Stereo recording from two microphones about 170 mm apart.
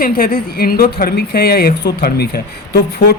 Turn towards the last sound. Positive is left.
turn(degrees=75)  # may be behind; listen again after turning